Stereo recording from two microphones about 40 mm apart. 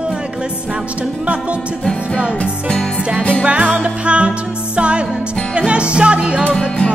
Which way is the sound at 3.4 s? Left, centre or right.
Right.